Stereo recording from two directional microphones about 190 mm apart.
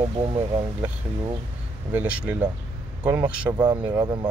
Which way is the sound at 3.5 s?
20° right (ahead or behind).